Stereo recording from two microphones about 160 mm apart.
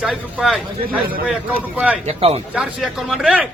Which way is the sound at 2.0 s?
40° right (ahead or behind).